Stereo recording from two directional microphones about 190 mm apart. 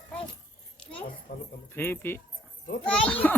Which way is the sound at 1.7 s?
10° left (ahead or behind).